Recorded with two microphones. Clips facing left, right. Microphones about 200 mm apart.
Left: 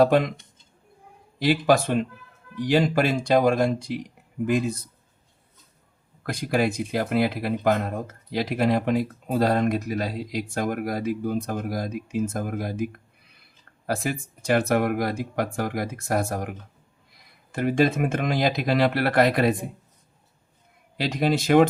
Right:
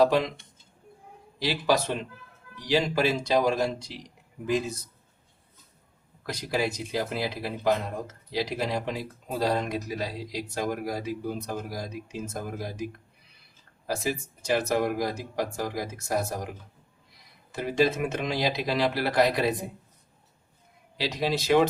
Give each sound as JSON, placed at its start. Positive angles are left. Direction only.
{"t": 0.0, "sound": "speech", "side_deg": 50}
{"t": 1.4, "sound": "speech", "side_deg": 50}
{"t": 6.2, "sound": "speech", "side_deg": 55}
{"t": 21.0, "sound": "speech", "side_deg": 50}